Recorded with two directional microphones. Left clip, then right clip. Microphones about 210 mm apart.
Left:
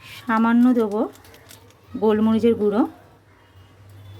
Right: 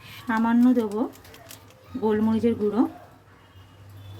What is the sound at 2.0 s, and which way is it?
Speech, 30° left (ahead or behind).